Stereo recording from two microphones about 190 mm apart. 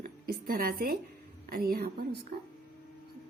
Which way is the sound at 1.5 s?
50° right (ahead or behind).